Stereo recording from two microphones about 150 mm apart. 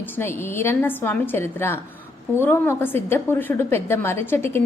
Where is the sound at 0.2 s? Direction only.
15° left (ahead or behind).